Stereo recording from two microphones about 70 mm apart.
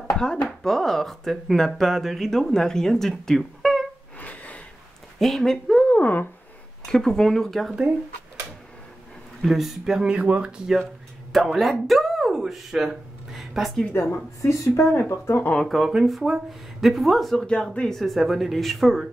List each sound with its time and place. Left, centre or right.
0.1 s speech: centre
4.2 s gasp: left
5.2 s speech: centre
5.9 s speech: left
6.9 s speech: centre
9.4 s speech: centre
11.3 s speech: centre
13.9 s speech: left
15.5 s speech: centre
17.5 s speech: centre
17.9 s speech: centre